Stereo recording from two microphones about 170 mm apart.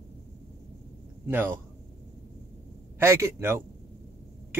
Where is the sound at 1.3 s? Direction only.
10° right (ahead or behind).